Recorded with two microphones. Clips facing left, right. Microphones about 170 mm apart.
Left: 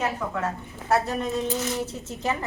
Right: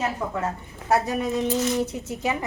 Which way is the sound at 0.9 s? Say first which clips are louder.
Right 2 dB; 15° right (ahead or behind).